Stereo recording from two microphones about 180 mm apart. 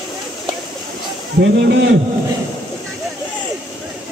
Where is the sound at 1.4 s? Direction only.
80° right.